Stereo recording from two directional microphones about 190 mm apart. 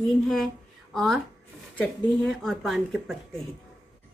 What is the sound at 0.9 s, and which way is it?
A woman's voice, centre (ahead or behind).